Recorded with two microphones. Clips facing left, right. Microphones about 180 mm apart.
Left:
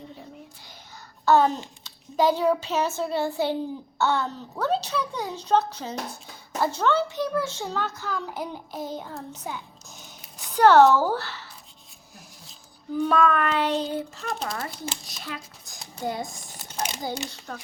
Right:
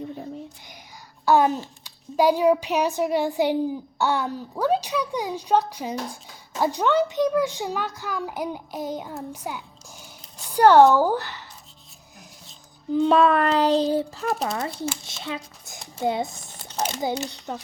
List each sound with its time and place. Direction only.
1.2 s a child's voice: 10° right (ahead or behind)
13.0 s child singing: 30° right (ahead or behind)
14.4 s speech: 25° right (ahead or behind)